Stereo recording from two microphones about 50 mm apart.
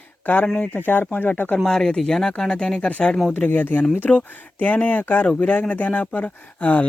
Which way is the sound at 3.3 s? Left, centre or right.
Left.